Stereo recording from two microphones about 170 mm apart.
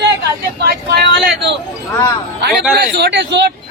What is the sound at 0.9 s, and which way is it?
Speech, 75° right (ahead or behind).